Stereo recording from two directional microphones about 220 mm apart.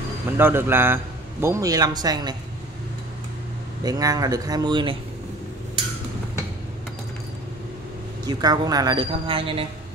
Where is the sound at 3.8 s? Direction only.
15° right (ahead or behind).